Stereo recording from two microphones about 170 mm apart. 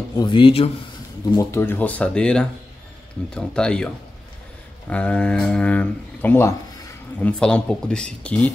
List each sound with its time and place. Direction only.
0.2 s speech: 30° left (ahead or behind)
1.3 s speech: 15° left (ahead or behind)